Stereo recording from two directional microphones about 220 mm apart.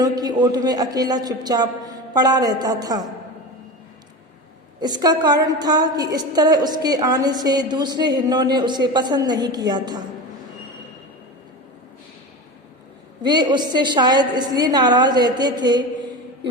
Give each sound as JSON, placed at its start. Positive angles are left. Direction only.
{"t": 0.0, "sound": "a woman's voice", "side_deg": -20}
{"t": 4.8, "sound": "a woman's voice", "side_deg": -20}
{"t": 13.2, "sound": "a woman's voice", "side_deg": -20}